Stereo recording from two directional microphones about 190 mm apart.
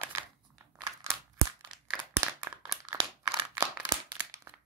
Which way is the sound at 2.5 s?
15° right (ahead or behind).